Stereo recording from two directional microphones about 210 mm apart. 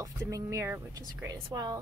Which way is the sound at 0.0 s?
15° right (ahead or behind).